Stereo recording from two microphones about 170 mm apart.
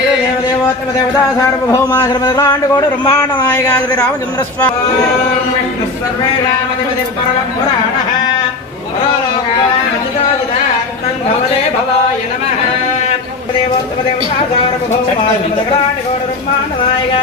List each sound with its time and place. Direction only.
1.7 s a man's voice: 20° left (ahead or behind)